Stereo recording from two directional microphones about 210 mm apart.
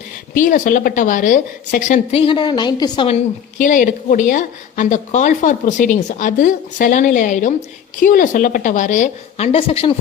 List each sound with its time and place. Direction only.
0.3 s a woman's voice: 40° left (ahead or behind); by 3.2 s 20° left (ahead or behind)
3.6 s a woman's voice: 40° left (ahead or behind)